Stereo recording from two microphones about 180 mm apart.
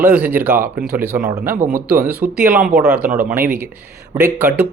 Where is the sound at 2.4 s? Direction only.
10° right (ahead or behind).